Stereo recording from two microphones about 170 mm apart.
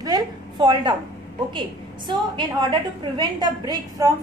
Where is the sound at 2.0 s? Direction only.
30° right (ahead or behind).